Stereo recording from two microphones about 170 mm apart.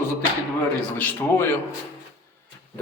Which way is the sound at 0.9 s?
10° left (ahead or behind).